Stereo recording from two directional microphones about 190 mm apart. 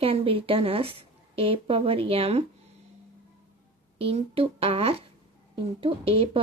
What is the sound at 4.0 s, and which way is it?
A woman's voice, 30° right (ahead or behind).